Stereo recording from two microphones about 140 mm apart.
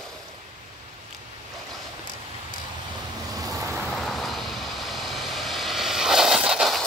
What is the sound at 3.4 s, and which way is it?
Vehicle, 25° right (ahead or behind).